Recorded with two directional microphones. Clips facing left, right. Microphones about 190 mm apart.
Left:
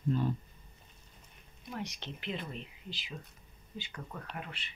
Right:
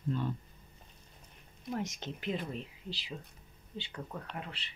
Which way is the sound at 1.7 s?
45° right (ahead or behind).